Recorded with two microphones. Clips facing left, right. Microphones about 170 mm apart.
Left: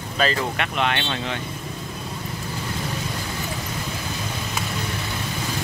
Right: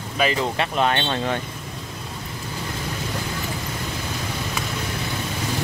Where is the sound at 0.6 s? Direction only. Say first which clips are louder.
Right 3 dB; 35° right (ahead or behind).